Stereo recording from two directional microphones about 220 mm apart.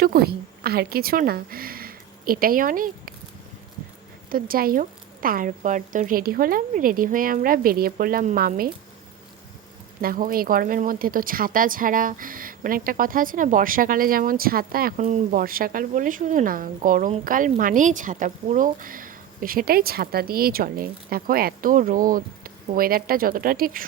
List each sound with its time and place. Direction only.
0.0 s a woman's voice: 45° right (ahead or behind)
4.3 s speech: 40° right (ahead or behind)
10.0 s speech: 40° right (ahead or behind)